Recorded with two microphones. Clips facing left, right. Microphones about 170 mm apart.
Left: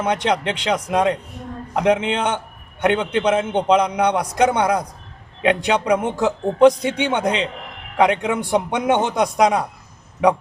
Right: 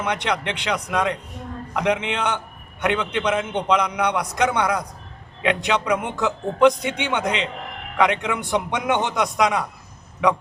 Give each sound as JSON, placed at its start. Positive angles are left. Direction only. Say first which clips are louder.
{"t": 0.0, "sound": "a man's voice", "louder": "left 4 dB", "side_deg": 40}
{"t": 0.3, "sound": "a man's voice", "louder": "left 4 dB", "side_deg": 25}